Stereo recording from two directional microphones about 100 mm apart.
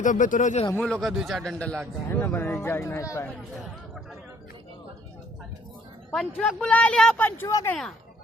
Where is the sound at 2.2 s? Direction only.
20° left (ahead or behind).